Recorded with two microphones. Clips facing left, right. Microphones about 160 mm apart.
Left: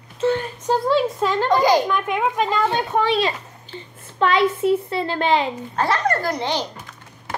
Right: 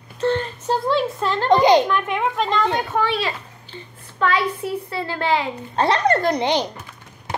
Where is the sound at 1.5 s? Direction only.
20° right (ahead or behind).